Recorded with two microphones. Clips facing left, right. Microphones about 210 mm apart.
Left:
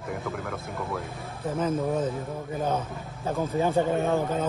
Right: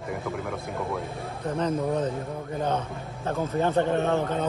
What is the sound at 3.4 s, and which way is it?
Speech, 10° left (ahead or behind).